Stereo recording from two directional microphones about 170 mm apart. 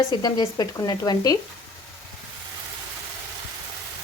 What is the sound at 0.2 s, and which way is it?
Speech, 25° left (ahead or behind).